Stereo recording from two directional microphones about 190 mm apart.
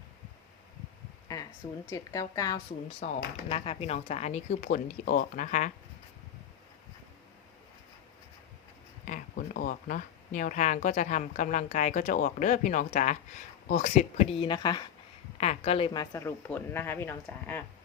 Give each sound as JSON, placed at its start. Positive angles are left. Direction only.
{"t": 1.9, "sound": "speech", "side_deg": 20}
{"t": 3.0, "sound": "speech", "side_deg": 35}
{"t": 9.0, "sound": "speech", "side_deg": 45}